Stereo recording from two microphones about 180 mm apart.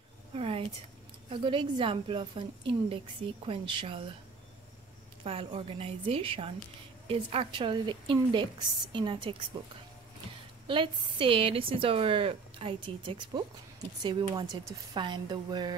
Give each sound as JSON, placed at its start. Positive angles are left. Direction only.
{"t": 0.3, "sound": "speech", "side_deg": -30}
{"t": 5.2, "sound": "a woman's voice", "side_deg": -30}
{"t": 10.7, "sound": "speech", "side_deg": -30}